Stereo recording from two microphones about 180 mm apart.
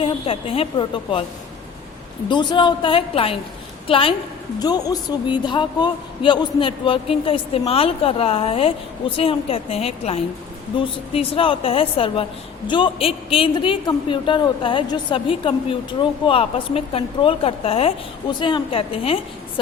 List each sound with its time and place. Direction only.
0.0 s a man's voice: 30° left (ahead or behind)
2.3 s a woman's voice: 25° left (ahead or behind)